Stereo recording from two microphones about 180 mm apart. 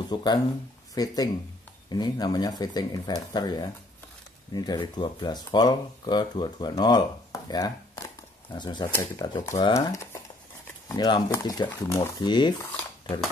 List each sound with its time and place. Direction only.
0.1 s speech: 25° left (ahead or behind)